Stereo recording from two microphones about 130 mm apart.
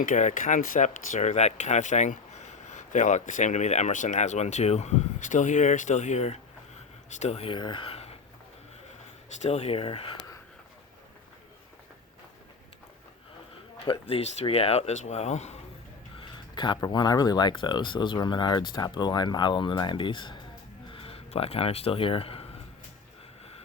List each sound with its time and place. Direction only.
0.0 s speech: 75° left (ahead or behind); by 8.1 s 50° left (ahead or behind)
9.4 s speech: 55° left (ahead or behind)
14.1 s speech: 50° left (ahead or behind)
16.1 s speech: 40° left (ahead or behind)